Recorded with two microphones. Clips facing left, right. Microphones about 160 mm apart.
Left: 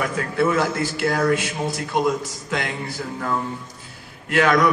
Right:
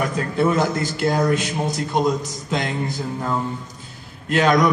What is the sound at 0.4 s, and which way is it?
A man's voice, 20° right (ahead or behind).